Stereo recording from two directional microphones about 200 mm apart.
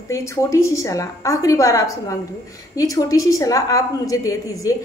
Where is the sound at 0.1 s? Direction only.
15° left (ahead or behind).